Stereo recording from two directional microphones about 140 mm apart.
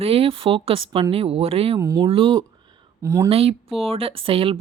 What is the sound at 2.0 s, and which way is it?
Speech, 40° right (ahead or behind).